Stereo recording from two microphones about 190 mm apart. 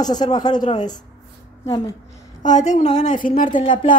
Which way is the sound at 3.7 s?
25° left (ahead or behind).